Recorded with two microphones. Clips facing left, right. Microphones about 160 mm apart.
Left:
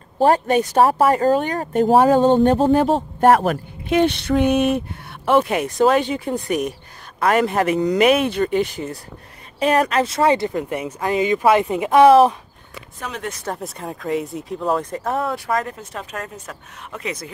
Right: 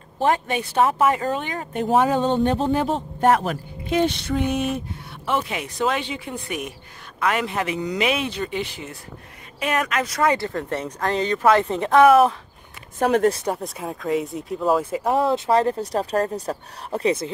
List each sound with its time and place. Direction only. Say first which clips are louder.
0.2 s speech: left 6 dB; 40° left (ahead or behind)
9.6 s speech: left 6 dB; 35° left (ahead or behind); by 12.0 s 10° left (ahead or behind)
12.0 s speech: left 3 dB; 25° left (ahead or behind)
13.6 s speech: even; centre (ahead or behind); by 17.3 s 30° right (ahead or behind)